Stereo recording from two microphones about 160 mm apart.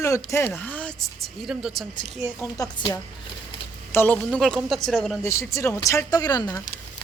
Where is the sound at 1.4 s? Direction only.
5° right (ahead or behind).